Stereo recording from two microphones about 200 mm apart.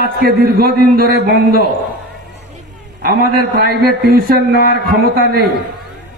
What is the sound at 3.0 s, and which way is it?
Speech, 50° right (ahead or behind).